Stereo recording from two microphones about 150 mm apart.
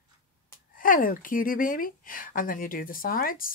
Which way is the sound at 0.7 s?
65° left (ahead or behind).